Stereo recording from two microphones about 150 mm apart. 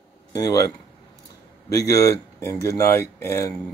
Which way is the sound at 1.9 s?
20° left (ahead or behind).